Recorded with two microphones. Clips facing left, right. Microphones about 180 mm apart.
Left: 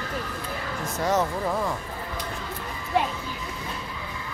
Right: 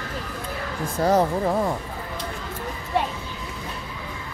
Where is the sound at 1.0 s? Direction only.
30° right (ahead or behind).